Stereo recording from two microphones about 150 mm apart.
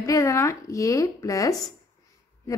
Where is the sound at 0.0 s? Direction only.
20° left (ahead or behind).